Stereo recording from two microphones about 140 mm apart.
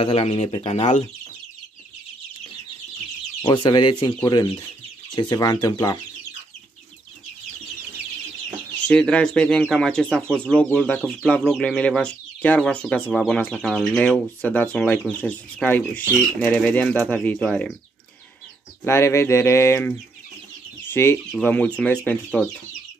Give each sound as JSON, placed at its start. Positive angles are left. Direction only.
{"t": 0.0, "sound": "speech", "side_deg": 45}
{"t": 3.4, "sound": "speech", "side_deg": 35}
{"t": 8.8, "sound": "speech", "side_deg": 5}
{"t": 18.9, "sound": "speech", "side_deg": 20}
{"t": 20.9, "sound": "speech", "side_deg": 20}